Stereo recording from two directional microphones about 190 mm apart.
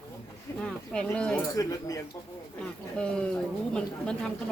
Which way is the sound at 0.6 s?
5° left (ahead or behind).